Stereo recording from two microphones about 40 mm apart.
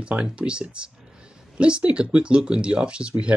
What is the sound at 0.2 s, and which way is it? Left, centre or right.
Speech, right.